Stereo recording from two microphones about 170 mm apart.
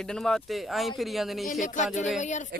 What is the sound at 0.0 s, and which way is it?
Speech, 5° left (ahead or behind).